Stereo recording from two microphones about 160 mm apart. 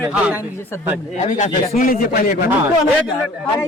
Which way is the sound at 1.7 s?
65° left (ahead or behind).